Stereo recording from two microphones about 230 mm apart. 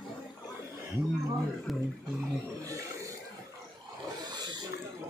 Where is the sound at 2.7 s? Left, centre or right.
Centre.